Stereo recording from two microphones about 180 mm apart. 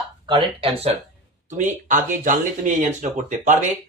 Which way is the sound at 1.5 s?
45° right (ahead or behind).